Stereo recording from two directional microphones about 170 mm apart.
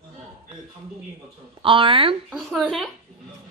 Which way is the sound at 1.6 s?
30° right (ahead or behind).